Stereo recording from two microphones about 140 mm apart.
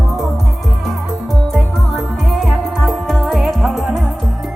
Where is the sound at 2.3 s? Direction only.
Centre (ahead or behind).